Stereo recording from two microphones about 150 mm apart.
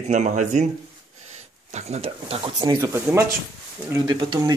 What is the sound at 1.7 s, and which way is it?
Speech, 45° right (ahead or behind).